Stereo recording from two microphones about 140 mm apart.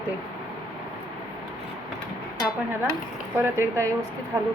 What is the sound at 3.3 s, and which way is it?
Speech, 15° right (ahead or behind).